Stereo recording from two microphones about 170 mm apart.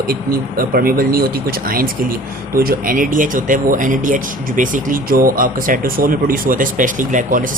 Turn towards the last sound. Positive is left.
turn(degrees=-50)  # may be behind; listen again after turning